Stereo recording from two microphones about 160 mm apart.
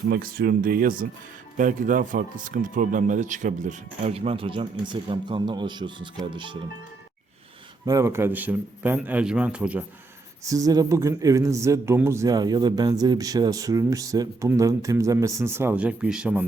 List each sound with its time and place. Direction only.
0.1 s speech: 70° right (ahead or behind); by 6.6 s 30° right (ahead or behind)
7.9 s a man's voice: 20° right (ahead or behind)
10.4 s a man's voice: 20° right (ahead or behind)